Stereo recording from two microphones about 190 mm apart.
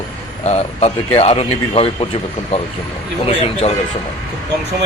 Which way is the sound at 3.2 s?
30° left (ahead or behind).